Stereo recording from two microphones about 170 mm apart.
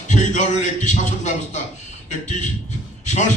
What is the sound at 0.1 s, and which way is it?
A man's voice, 45° left (ahead or behind).